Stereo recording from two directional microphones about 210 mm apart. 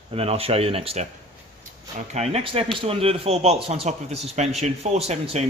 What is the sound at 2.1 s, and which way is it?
Speech, 30° right (ahead or behind).